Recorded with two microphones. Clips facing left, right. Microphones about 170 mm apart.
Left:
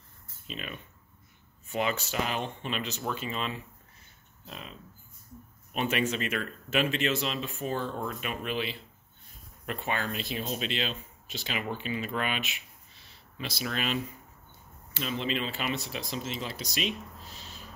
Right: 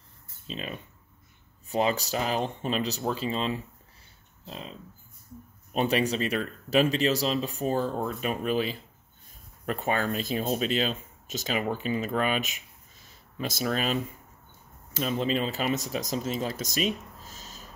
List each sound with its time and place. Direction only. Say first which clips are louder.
0.5 s speech: right 4 dB; 30° right (ahead or behind)
15.0 s speech: right 5 dB; 40° right (ahead or behind)